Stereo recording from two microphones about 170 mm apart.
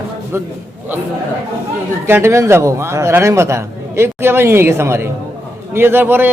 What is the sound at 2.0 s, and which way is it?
A man's voice, 15° right (ahead or behind).